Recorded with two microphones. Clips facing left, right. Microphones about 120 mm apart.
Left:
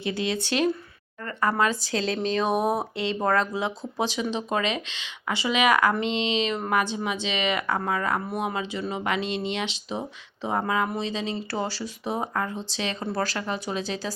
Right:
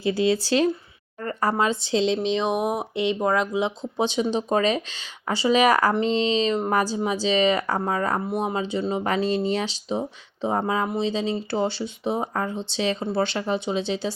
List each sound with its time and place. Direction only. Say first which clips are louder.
0.0 s speech: right 6 dB; 30° right (ahead or behind); by 3.6 s 10° right (ahead or behind)
3.6 s speech: right 3 dB; 25° right (ahead or behind)